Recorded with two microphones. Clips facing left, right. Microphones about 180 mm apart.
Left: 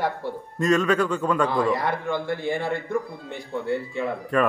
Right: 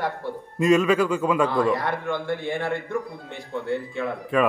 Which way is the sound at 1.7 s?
10° left (ahead or behind).